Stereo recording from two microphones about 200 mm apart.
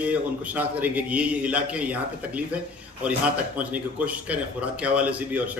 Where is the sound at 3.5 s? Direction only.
5° right (ahead or behind).